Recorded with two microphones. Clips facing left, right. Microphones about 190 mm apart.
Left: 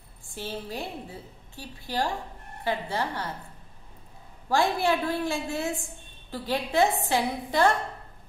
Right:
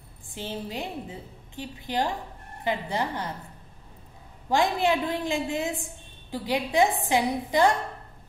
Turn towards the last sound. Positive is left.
turn(degrees=-15)  # may be behind; listen again after turning